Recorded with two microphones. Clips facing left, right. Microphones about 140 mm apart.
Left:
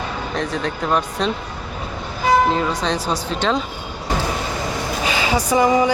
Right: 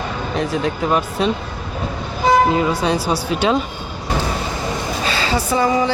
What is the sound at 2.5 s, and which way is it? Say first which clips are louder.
Speech: right 3 dB; 10° right (ahead or behind).